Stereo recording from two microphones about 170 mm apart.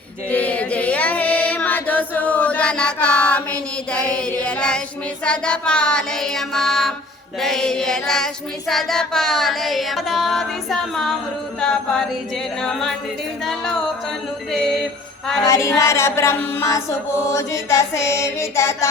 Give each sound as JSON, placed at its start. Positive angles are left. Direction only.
{"t": 0.3, "sound": "chant", "side_deg": 10}
{"t": 5.2, "sound": "music", "side_deg": 5}
{"t": 15.4, "sound": "chant", "side_deg": 15}